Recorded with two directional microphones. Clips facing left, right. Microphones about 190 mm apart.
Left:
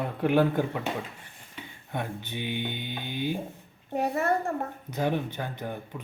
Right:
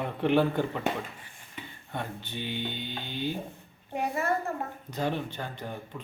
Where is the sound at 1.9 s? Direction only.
15° left (ahead or behind).